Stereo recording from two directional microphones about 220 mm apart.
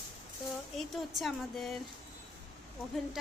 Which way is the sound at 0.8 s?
Centre (ahead or behind).